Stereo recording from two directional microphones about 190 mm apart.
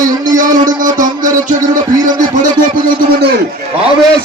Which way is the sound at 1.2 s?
40° right (ahead or behind).